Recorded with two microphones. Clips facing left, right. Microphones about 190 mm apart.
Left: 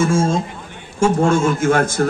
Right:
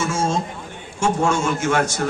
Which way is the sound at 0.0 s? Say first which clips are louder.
Left 5 dB; 55° left (ahead or behind).